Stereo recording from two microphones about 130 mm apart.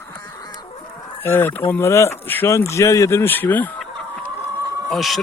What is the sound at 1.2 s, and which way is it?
Speech, 15° left (ahead or behind).